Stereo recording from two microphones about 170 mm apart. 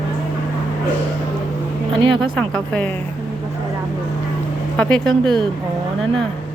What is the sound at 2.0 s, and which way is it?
Speech, 30° right (ahead or behind).